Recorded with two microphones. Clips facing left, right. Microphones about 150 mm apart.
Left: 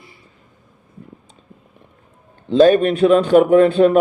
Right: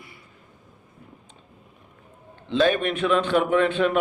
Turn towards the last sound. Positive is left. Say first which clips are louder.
# left 9 dB
turn(degrees=40)  # may be behind; listen again after turning